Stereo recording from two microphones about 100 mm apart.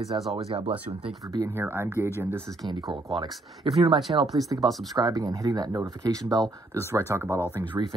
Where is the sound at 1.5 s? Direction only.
25° right (ahead or behind).